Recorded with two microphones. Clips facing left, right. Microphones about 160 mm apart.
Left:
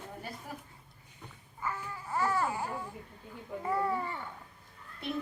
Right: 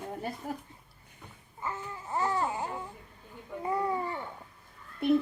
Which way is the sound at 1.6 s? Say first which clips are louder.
Right 1 dB; 20° right (ahead or behind).